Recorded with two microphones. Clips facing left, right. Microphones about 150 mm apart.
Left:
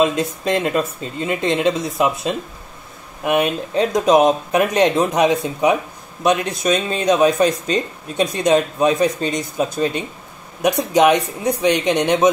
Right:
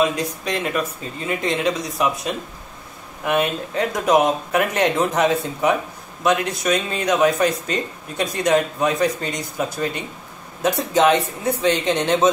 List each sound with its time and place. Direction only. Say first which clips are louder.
0.0 s speech: left 3 dB; 25° left (ahead or behind)